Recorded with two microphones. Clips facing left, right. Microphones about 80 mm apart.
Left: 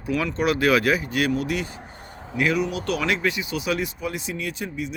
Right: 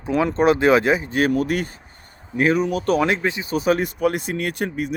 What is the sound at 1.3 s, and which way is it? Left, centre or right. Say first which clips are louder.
Speech: right 4 dB; right.